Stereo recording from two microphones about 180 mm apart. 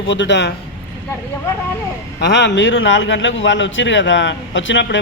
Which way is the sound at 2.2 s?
75° left (ahead or behind).